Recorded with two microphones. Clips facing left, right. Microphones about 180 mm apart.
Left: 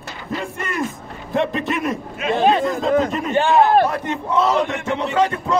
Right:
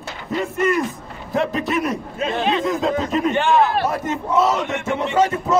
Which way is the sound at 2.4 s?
45° left (ahead or behind).